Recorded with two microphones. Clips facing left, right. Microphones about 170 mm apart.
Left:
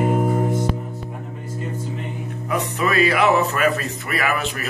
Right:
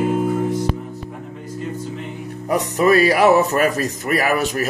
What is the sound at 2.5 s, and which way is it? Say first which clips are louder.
Speech: right 7 dB; 40° right (ahead or behind).